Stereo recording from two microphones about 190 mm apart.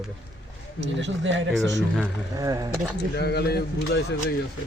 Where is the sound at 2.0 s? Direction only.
20° right (ahead or behind).